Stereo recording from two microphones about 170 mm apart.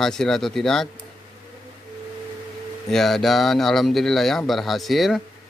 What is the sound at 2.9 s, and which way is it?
Speech, centre (ahead or behind).